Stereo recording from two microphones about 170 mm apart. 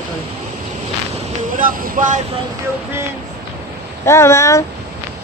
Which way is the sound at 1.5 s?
55° right (ahead or behind).